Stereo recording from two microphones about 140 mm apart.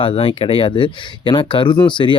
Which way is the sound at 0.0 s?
40° left (ahead or behind).